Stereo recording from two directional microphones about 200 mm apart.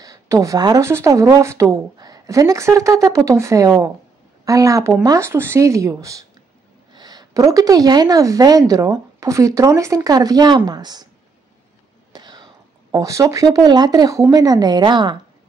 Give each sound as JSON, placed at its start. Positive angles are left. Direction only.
{"t": 0.0, "sound": "speech", "side_deg": -15}
{"t": 12.1, "sound": "a sound", "side_deg": -20}
{"t": 12.9, "sound": "speech", "side_deg": -15}